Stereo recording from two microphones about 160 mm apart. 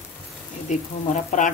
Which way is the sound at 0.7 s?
50° left (ahead or behind).